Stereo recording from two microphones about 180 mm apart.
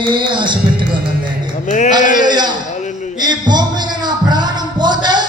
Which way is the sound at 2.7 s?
40° left (ahead or behind).